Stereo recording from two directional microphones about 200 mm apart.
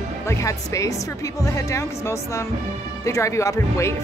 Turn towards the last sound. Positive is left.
turn(degrees=15)  # may be behind; listen again after turning